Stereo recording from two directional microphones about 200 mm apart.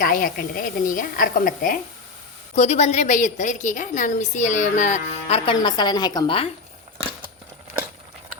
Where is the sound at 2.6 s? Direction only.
35° left (ahead or behind).